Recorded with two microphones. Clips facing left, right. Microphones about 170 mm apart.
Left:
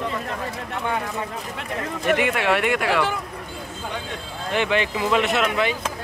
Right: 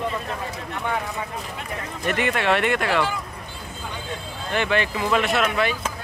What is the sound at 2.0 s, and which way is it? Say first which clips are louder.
Speech: left 1 dB; 10° left (ahead or behind).